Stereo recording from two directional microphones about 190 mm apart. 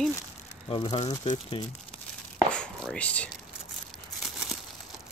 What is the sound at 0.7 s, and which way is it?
Speech, 25° left (ahead or behind).